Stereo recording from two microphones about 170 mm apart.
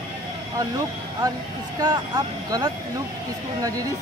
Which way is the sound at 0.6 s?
20° right (ahead or behind).